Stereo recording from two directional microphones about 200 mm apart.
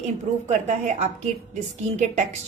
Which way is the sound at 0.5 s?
35° right (ahead or behind).